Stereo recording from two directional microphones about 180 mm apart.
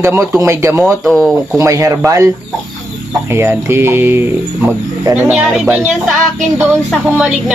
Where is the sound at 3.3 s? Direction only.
15° right (ahead or behind).